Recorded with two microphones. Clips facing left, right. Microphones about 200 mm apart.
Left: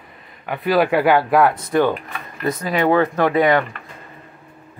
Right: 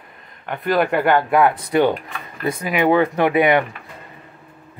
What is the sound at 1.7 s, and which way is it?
Speech, 15° right (ahead or behind).